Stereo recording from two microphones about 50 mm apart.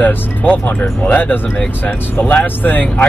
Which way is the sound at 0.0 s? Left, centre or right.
Left.